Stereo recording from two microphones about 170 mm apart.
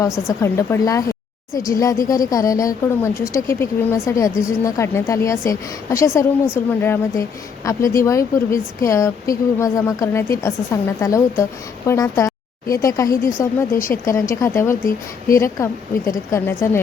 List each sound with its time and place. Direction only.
0.4 s a woman's voice: 15° left (ahead or behind)